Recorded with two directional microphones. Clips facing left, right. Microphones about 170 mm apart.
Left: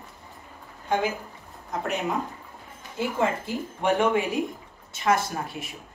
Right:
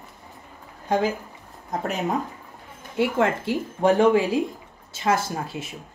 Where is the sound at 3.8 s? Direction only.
35° right (ahead or behind).